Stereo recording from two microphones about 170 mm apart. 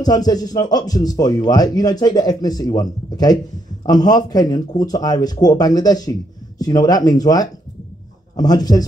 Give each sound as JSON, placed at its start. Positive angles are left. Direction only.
{"t": 0.0, "sound": "speech", "side_deg": 20}